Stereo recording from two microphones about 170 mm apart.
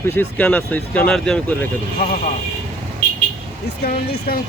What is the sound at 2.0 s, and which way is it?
Speech, 60° left (ahead or behind).